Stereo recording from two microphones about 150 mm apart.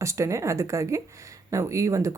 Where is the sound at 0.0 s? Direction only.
20° right (ahead or behind).